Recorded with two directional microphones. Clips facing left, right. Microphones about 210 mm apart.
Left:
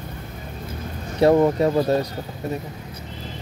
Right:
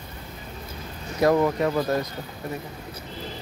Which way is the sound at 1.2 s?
25° left (ahead or behind).